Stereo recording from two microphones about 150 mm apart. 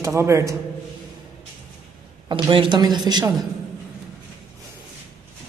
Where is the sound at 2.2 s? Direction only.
30° right (ahead or behind).